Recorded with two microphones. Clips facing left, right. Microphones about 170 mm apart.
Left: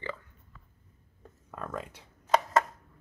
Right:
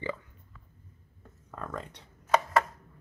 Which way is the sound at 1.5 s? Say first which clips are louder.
Left 1 dB; 5° left (ahead or behind).